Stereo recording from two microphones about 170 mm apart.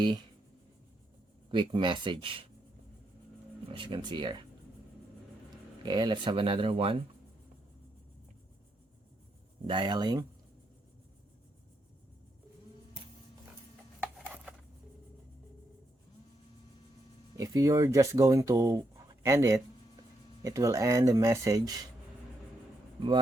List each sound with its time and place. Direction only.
1.5 s speech: 30° right (ahead or behind)
3.7 s speech: 30° right (ahead or behind)
5.8 s speech: 25° right (ahead or behind)
9.6 s speech: 25° right (ahead or behind)
17.3 s speech: 20° right (ahead or behind)
23.0 s speech: 30° right (ahead or behind)